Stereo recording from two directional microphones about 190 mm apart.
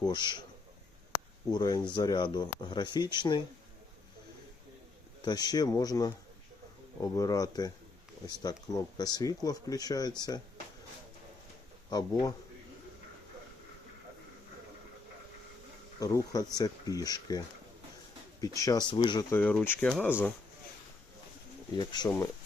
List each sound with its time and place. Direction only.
0.0 s speech: 25° left (ahead or behind)
1.5 s speech: 20° left (ahead or behind)
5.2 s speech: 20° left (ahead or behind)
11.9 s speech: 20° left (ahead or behind)
16.0 s speech: 20° left (ahead or behind)
19.4 s speech: 5° left (ahead or behind)
21.8 s speech: 20° left (ahead or behind)